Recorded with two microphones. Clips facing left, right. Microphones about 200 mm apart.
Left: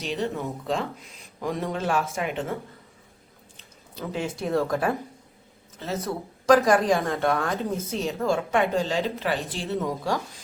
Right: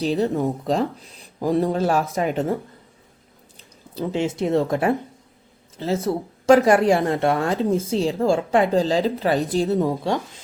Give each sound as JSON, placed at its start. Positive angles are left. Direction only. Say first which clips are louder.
{"t": 0.0, "sound": "speech", "louder": "right 8 dB", "side_deg": -35}
{"t": 3.9, "sound": "speech", "louder": "right 7 dB", "side_deg": -25}